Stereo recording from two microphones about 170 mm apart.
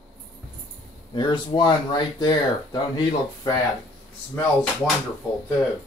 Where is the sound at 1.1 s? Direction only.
25° left (ahead or behind).